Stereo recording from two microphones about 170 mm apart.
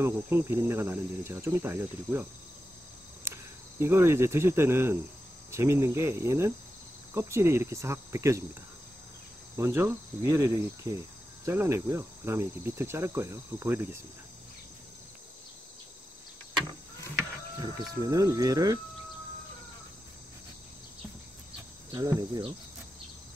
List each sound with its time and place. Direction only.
0.0 s cricket: 15° right (ahead or behind)
3.8 s cricket: 15° right (ahead or behind)
9.6 s cricket: 15° right (ahead or behind)
17.6 s speech: 20° right (ahead or behind)
21.9 s speech: 20° right (ahead or behind)